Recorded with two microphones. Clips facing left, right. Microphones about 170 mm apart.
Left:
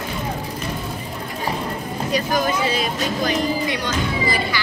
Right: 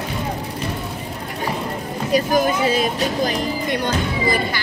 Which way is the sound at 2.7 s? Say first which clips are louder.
Right 3 dB; 50° right (ahead or behind).